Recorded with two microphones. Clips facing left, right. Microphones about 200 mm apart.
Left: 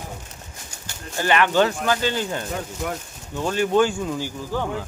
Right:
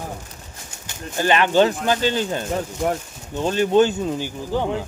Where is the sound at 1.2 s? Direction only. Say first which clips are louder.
Right 2 dB; 20° right (ahead or behind).